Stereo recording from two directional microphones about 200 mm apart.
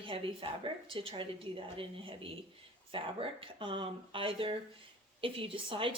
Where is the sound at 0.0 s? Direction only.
25° right (ahead or behind).